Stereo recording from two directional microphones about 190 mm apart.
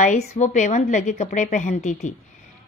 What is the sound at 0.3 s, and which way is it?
A woman's voice, 40° left (ahead or behind).